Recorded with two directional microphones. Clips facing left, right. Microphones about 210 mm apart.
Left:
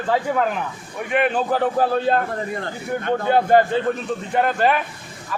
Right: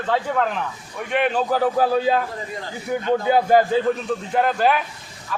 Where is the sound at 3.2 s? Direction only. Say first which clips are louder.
Left 2 dB; 5° right (ahead or behind).